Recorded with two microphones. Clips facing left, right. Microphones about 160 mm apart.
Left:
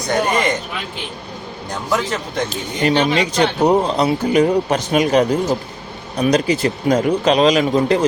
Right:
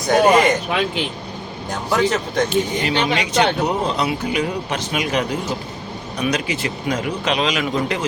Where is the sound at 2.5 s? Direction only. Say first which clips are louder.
Left 1 dB; 40° left (ahead or behind).